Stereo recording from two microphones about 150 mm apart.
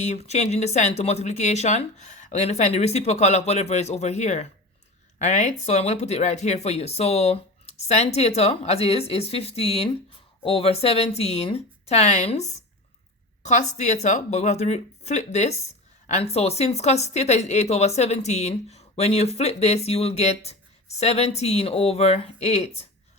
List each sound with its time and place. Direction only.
0.0 s speech: 50° left (ahead or behind)